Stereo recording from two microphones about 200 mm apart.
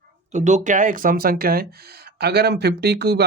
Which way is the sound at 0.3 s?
35° right (ahead or behind).